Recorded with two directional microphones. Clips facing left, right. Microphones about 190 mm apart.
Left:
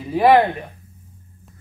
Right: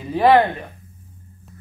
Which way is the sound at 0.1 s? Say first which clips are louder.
Left 1 dB; 10° left (ahead or behind).